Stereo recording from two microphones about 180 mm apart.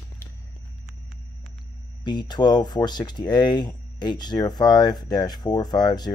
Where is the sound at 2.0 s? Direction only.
25° left (ahead or behind).